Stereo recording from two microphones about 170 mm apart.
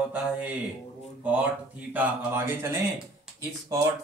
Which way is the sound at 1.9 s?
10° right (ahead or behind).